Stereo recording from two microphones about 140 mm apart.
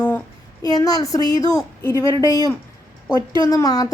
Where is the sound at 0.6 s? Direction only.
25° left (ahead or behind).